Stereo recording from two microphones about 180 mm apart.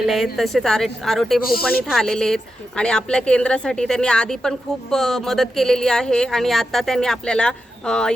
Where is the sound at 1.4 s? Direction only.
55° left (ahead or behind).